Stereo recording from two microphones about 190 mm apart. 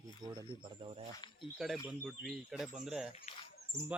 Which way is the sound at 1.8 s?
Centre (ahead or behind).